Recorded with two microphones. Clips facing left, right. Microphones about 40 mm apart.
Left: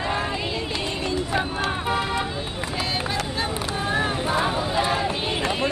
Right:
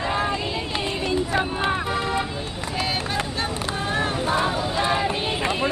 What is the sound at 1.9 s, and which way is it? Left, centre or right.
Speech, centre.